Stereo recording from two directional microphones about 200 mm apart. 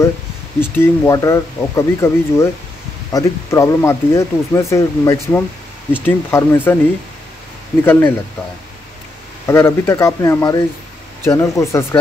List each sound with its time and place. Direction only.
0.6 s speech: 10° left (ahead or behind)
7.8 s speech: 10° left (ahead or behind)
9.5 s speech: 15° left (ahead or behind)